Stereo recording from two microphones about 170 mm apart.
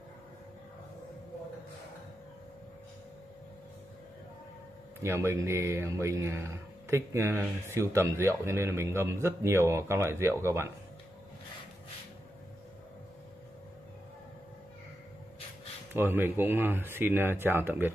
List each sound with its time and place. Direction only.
5.0 s speech: 15° right (ahead or behind)
15.9 s speech: 15° right (ahead or behind)